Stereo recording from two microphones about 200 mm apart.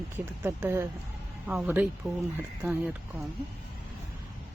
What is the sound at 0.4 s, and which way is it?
Speech, 10° right (ahead or behind).